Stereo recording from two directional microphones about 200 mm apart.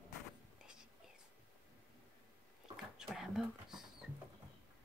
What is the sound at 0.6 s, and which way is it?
Whispering, 5° right (ahead or behind).